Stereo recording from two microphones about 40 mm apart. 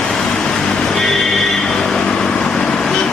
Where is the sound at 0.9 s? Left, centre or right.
Centre.